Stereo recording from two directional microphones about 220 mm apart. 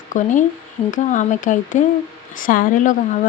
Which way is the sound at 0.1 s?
35° left (ahead or behind).